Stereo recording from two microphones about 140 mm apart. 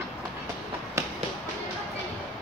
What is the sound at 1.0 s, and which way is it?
Music, 20° right (ahead or behind).